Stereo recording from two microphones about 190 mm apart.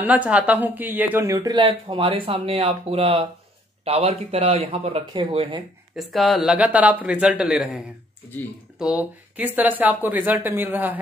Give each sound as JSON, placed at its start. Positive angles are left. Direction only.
{"t": 0.0, "sound": "speech", "side_deg": -5}
{"t": 5.9, "sound": "speech", "side_deg": 0}